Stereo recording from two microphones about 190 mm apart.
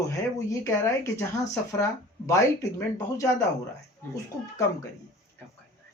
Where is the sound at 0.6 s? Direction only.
15° left (ahead or behind).